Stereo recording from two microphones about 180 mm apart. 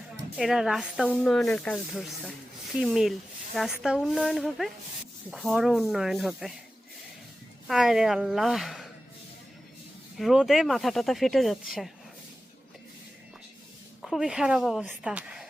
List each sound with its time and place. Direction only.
0.3 s speech: centre (ahead or behind)
7.7 s speech: centre (ahead or behind)
10.2 s speech: centre (ahead or behind)
14.0 s speech: centre (ahead or behind)